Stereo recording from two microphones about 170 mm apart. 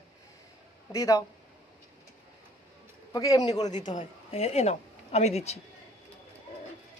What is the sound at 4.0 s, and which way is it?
Speech, 40° left (ahead or behind).